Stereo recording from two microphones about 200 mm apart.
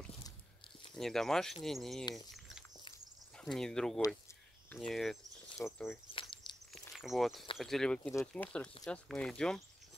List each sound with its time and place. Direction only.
0.9 s speech: centre (ahead or behind)
3.3 s speech: 5° left (ahead or behind)
6.5 s a sound: 20° left (ahead or behind)
6.9 s speech: centre (ahead or behind)